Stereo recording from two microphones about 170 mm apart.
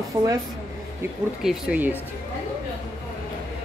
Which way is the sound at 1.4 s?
5° right (ahead or behind).